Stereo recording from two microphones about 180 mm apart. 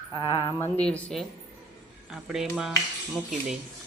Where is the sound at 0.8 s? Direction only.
5° left (ahead or behind).